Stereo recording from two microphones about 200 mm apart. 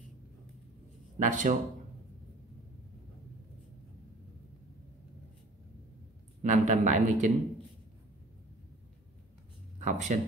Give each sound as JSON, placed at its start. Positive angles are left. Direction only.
{"t": 1.2, "sound": "speech", "side_deg": -40}
{"t": 6.4, "sound": "speech", "side_deg": -35}
{"t": 9.8, "sound": "speech", "side_deg": -35}